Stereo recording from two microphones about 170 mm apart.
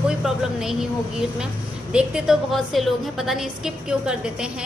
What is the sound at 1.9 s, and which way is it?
A woman's voice, 5° right (ahead or behind).